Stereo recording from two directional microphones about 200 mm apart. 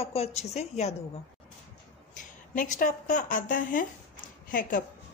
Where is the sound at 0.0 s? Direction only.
30° left (ahead or behind).